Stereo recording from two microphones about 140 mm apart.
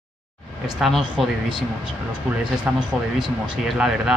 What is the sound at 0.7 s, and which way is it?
Speech, centre (ahead or behind).